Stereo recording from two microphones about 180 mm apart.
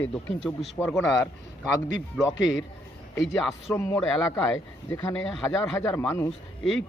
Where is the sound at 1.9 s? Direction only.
90° left.